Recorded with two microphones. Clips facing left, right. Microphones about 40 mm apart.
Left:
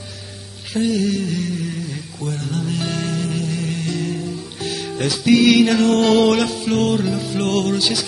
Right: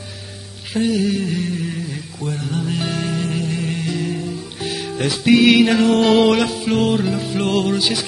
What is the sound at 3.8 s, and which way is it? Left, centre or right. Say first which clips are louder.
Music: right 1 dB; centre.